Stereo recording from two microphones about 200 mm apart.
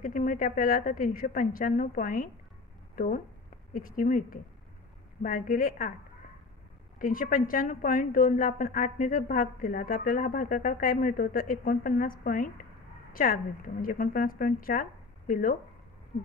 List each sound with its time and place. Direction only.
0.0 s a woman's voice: 40° left (ahead or behind)
3.7 s a woman's voice: 40° left (ahead or behind)
7.0 s a woman's voice: 45° left (ahead or behind)